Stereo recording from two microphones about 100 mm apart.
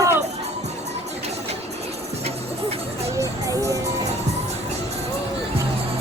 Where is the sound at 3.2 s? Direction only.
30° right (ahead or behind).